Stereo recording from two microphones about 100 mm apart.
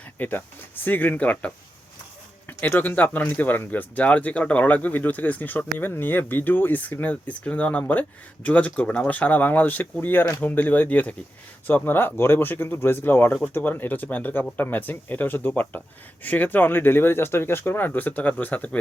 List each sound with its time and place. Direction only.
0.2 s speech: 20° left (ahead or behind)